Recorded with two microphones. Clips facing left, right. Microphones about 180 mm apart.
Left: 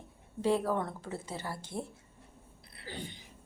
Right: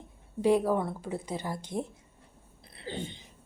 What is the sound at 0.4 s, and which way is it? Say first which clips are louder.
A woman's voice: right 5 dB; 15° right (ahead or behind).